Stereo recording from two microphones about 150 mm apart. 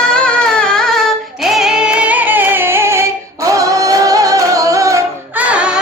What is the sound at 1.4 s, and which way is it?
Female singing, centre (ahead or behind).